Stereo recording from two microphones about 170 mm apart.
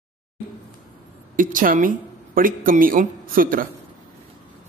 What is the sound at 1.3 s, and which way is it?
Speech, 55° right (ahead or behind).